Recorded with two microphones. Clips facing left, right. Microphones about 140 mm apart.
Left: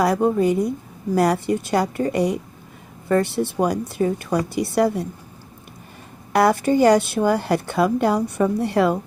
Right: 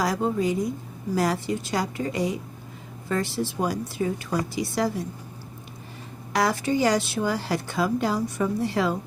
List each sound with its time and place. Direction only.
0.0 s a woman's voice: 60° left (ahead or behind)
6.3 s a woman's voice: 55° left (ahead or behind)